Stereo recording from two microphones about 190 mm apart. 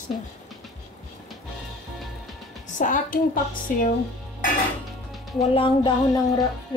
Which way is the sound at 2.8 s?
45° left (ahead or behind).